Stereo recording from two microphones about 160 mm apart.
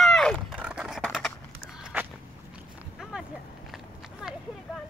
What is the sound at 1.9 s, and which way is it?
Walk, 10° right (ahead or behind).